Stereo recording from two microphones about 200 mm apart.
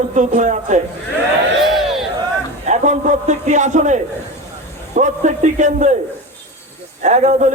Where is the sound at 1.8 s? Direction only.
Centre (ahead or behind).